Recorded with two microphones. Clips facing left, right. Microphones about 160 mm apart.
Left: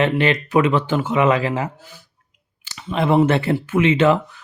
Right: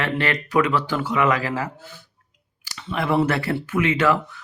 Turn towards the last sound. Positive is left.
turn(degrees=25)  # may be behind; listen again after turning